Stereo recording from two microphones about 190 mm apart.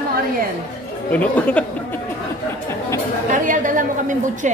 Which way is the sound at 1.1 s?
5° left (ahead or behind).